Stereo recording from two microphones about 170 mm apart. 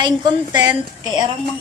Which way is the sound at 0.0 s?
25° right (ahead or behind).